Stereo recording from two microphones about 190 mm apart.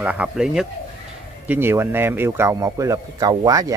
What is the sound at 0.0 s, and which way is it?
Speech, 5° right (ahead or behind).